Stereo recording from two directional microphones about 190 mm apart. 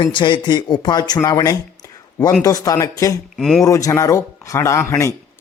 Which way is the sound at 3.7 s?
15° left (ahead or behind).